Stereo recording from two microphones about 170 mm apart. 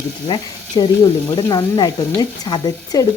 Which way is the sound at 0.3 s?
25° left (ahead or behind).